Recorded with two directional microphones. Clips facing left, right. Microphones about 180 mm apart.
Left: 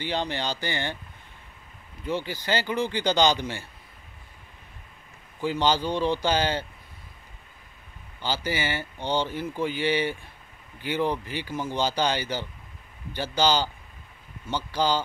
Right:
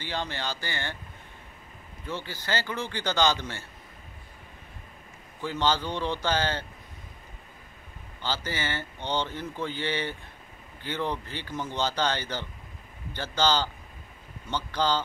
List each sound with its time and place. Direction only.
0.0 s speech: 20° left (ahead or behind)
2.0 s speech: 15° left (ahead or behind)
5.4 s speech: 15° left (ahead or behind)
8.2 s speech: 10° left (ahead or behind)